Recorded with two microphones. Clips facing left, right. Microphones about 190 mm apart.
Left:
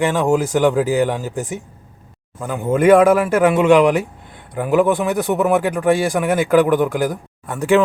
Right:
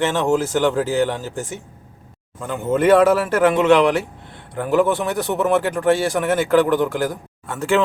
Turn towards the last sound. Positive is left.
turn(degrees=15)  # may be behind; listen again after turning